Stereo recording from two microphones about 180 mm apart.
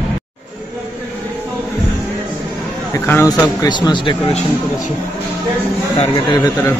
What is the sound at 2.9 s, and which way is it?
Speech, 15° left (ahead or behind).